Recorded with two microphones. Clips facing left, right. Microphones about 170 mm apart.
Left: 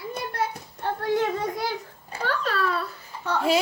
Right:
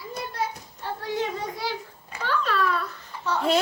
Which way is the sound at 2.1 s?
40° left (ahead or behind).